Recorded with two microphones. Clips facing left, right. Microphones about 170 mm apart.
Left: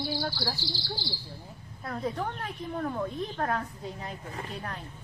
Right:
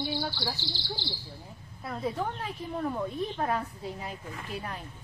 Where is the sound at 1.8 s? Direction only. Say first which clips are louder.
Even; 5° right (ahead or behind).